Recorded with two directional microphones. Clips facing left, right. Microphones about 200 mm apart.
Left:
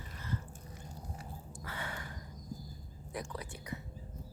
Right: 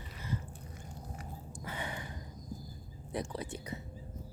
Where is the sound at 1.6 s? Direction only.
15° right (ahead or behind).